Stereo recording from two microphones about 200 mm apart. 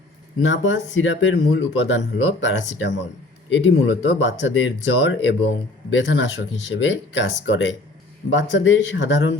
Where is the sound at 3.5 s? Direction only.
65° left (ahead or behind).